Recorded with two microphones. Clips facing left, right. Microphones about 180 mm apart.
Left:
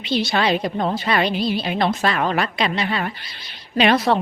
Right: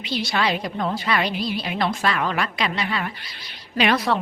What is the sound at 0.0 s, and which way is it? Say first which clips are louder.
Speech: left 4 dB; 25° left (ahead or behind).